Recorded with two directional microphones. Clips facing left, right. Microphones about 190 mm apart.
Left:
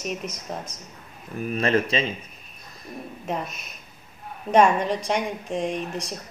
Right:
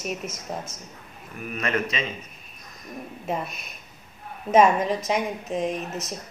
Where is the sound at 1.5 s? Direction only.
30° left (ahead or behind).